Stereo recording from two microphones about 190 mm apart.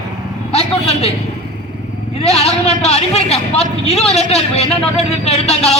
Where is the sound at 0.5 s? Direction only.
35° left (ahead or behind).